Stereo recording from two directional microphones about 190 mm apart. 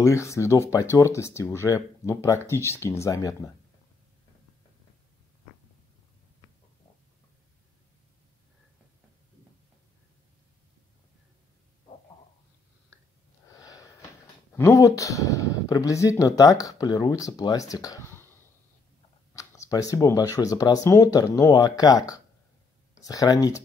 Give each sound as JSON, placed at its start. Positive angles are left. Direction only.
{"t": 0.0, "sound": "speech", "side_deg": 15}
{"t": 13.5, "sound": "wheeze", "side_deg": 20}
{"t": 14.5, "sound": "speech", "side_deg": 15}
{"t": 19.3, "sound": "speech", "side_deg": 15}